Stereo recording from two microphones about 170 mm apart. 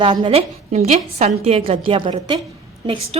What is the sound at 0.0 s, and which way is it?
A woman's voice, 30° right (ahead or behind).